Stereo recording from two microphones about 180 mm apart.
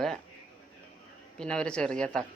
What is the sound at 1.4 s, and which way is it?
Speech, 5° left (ahead or behind).